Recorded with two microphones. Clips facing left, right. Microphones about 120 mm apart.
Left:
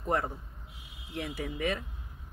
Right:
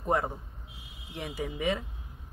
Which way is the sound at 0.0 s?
20° right (ahead or behind).